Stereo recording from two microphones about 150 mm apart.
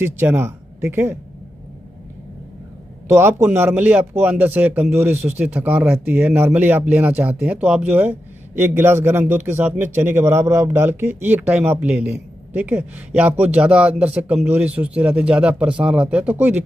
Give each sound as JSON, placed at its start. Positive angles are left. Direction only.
{"t": 0.0, "sound": "speech", "side_deg": -15}
{"t": 3.1, "sound": "speech", "side_deg": -15}